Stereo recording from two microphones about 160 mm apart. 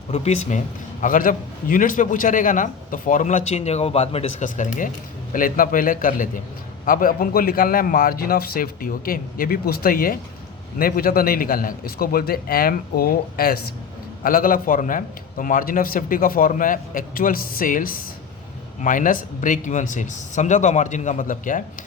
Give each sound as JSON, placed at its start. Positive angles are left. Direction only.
{"t": 0.1, "sound": "speech", "side_deg": 45}
{"t": 1.0, "sound": "a man's voice", "side_deg": 60}